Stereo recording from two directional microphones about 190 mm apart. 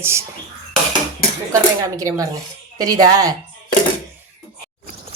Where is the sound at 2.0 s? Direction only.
20° right (ahead or behind).